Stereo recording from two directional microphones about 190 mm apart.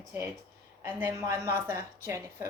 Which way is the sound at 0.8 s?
10° right (ahead or behind).